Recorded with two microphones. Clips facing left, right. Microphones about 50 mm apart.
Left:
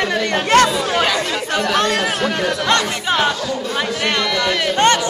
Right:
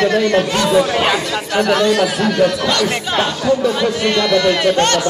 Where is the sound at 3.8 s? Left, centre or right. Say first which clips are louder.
Right 3 dB; centre.